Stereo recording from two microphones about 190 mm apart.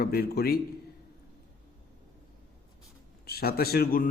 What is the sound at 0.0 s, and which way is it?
Speech, 55° left (ahead or behind).